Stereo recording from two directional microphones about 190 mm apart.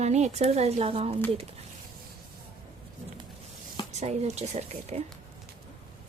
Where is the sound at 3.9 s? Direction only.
35° right (ahead or behind).